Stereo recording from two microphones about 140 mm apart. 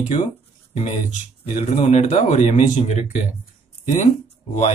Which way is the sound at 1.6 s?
50° left (ahead or behind).